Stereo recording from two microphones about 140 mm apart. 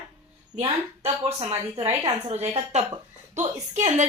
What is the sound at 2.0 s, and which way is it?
Speech, 35° right (ahead or behind).